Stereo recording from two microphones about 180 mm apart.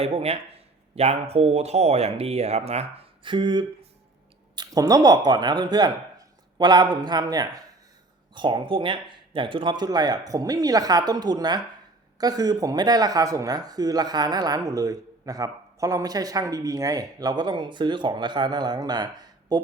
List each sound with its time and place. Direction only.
0.0 s speech: 35° right (ahead or behind)
3.2 s speech: 25° right (ahead or behind)